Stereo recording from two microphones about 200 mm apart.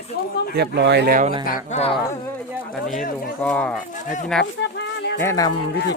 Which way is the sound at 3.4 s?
5° left (ahead or behind).